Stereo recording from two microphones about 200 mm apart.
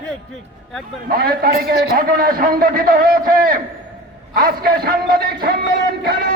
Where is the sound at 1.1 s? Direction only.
50° right (ahead or behind).